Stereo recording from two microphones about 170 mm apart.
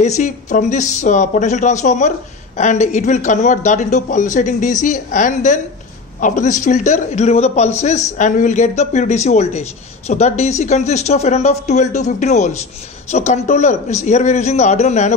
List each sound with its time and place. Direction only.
0.0 s speech: 45° left (ahead or behind)